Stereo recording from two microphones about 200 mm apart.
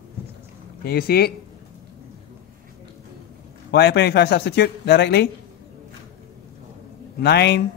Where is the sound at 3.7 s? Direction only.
55° left (ahead or behind).